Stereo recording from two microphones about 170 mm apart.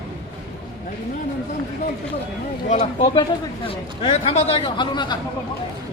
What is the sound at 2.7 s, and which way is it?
Speech, 40° left (ahead or behind).